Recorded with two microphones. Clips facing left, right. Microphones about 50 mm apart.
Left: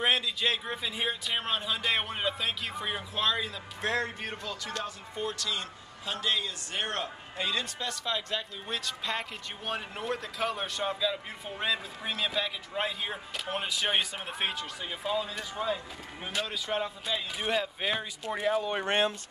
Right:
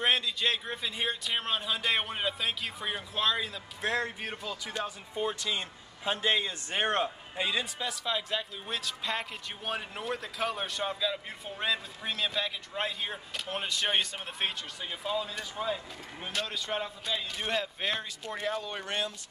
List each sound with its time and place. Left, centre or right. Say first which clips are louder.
0.0 s a man's voice: even; centre; by 7.1 s right
7.3 s a man's voice: even; centre
18.9 s speech: left 7 dB; left